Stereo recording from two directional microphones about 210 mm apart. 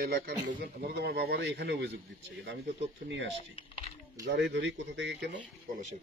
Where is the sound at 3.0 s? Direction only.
60° right (ahead or behind).